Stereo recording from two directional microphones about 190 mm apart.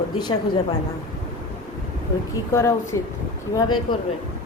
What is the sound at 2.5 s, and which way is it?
Speech, 15° left (ahead or behind).